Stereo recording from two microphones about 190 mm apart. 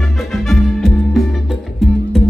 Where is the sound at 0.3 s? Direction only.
Centre (ahead or behind).